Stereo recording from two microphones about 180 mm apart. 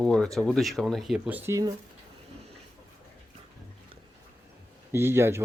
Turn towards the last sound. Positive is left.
turn(degrees=-15)  # may be behind; listen again after turning